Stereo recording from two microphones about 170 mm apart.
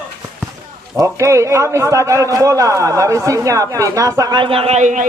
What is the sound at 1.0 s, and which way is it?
A man's voice, 15° right (ahead or behind).